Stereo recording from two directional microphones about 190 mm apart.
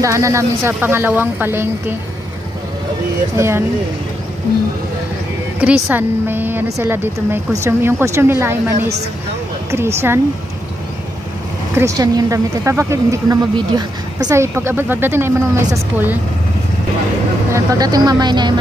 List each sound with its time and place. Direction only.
0.0 s speech: 15° right (ahead or behind)
3.3 s speech: 15° right (ahead or behind)
5.6 s speech: 10° right (ahead or behind)
11.7 s speech: 15° right (ahead or behind)
17.5 s speech: 15° right (ahead or behind)